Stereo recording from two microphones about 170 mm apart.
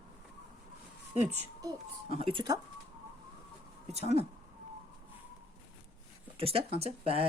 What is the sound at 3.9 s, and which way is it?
Speech, 40° right (ahead or behind).